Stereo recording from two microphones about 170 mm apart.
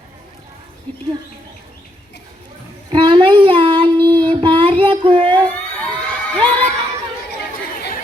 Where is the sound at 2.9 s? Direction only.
30° right (ahead or behind).